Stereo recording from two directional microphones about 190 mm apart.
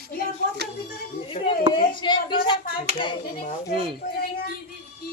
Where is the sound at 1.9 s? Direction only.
25° left (ahead or behind).